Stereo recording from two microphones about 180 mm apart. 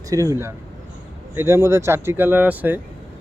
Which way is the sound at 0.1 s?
15° right (ahead or behind).